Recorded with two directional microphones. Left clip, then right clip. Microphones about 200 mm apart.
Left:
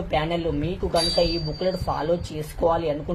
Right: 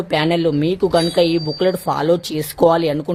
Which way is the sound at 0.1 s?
50° right (ahead or behind).